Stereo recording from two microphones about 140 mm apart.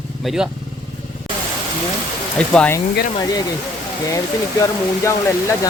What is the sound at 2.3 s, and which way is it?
Speech, 5° left (ahead or behind).